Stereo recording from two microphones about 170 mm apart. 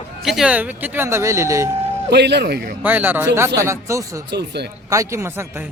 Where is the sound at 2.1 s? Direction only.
80° right.